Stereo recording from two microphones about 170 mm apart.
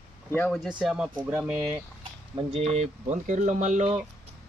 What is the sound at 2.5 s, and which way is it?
Speech, 40° right (ahead or behind).